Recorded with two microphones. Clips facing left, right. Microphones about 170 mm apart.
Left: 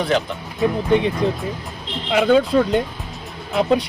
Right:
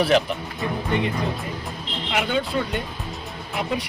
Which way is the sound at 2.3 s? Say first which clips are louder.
Left 12 dB; 90° left.